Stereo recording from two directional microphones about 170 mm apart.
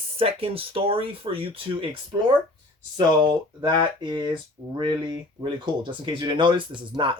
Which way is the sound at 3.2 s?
25° right (ahead or behind).